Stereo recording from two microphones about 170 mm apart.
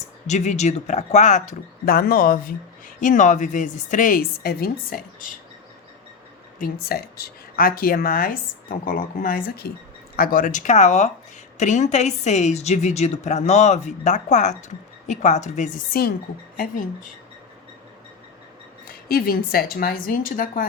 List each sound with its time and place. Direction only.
0.3 s speech: 40° left (ahead or behind); by 5.3 s 60° left (ahead or behind)
6.6 s a woman's voice: 65° left (ahead or behind); by 15.7 s 45° left (ahead or behind)
15.9 s a woman's voice: 65° left (ahead or behind)
16.6 s speech: 50° left (ahead or behind)
18.9 s a woman's voice: 60° left (ahead or behind)